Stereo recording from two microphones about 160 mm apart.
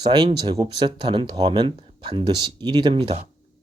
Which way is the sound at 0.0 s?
25° right (ahead or behind).